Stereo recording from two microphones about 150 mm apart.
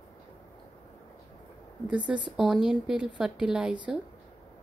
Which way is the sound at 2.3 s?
Centre (ahead or behind).